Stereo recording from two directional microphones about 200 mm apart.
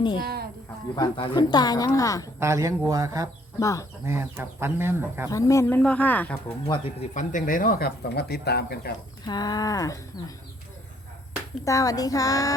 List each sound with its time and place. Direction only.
0.9 s speech: 20° left (ahead or behind)
2.4 s speech: 15° right (ahead or behind)
3.6 s speech: 15° left (ahead or behind)
4.0 s speech: 10° right (ahead or behind)
5.3 s speech: 15° left (ahead or behind)
6.7 s speech: 35° left (ahead or behind); by 8.9 s 55° left (ahead or behind)
9.2 s speech: 20° left (ahead or behind)
11.6 s speech: 15° left (ahead or behind)